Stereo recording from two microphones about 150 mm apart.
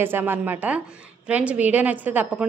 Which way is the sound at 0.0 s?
15° right (ahead or behind).